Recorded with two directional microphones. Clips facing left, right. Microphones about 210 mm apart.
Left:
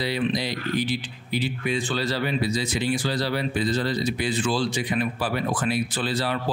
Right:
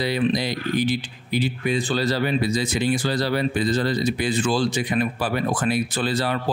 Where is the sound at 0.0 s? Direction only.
50° right (ahead or behind).